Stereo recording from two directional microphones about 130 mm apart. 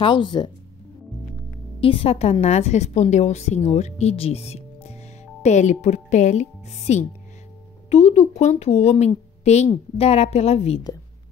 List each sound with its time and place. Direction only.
0.0 s speech: 35° left (ahead or behind)
1.8 s a woman's voice: 45° left (ahead or behind)
5.4 s a woman's voice: 65° left (ahead or behind)